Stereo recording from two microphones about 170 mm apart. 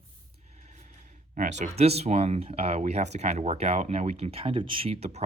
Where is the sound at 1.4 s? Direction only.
45° right (ahead or behind).